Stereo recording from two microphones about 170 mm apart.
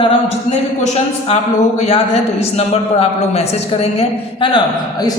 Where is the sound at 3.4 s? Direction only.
35° left (ahead or behind).